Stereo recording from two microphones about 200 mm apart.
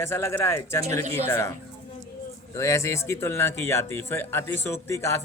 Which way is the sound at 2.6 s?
15° left (ahead or behind).